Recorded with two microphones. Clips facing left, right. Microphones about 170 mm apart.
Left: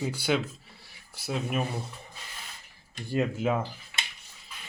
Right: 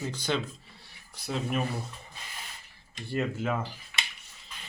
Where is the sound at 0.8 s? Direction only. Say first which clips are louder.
Left 2 dB; 5° left (ahead or behind).